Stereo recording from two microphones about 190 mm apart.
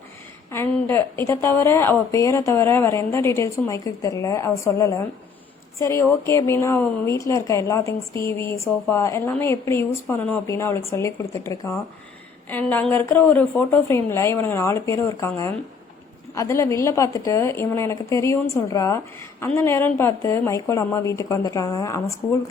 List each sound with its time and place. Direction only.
0.5 s a woman's voice: 10° left (ahead or behind)